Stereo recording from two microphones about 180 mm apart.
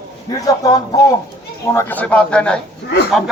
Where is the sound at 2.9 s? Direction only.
70° left (ahead or behind).